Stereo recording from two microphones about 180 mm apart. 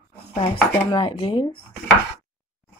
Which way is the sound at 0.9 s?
30° left (ahead or behind).